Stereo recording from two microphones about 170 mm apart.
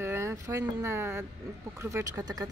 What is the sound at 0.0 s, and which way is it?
Speech, 15° right (ahead or behind).